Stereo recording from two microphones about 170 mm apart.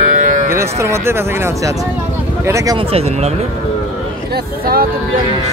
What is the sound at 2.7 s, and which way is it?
Speech, 35° right (ahead or behind).